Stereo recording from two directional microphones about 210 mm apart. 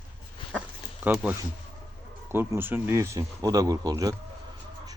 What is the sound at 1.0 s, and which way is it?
Speech, 5° right (ahead or behind).